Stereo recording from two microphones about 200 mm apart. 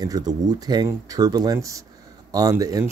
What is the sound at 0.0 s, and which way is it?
Speech, 20° right (ahead or behind).